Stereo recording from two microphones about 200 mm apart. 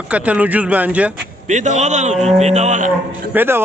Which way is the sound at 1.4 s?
35° right (ahead or behind).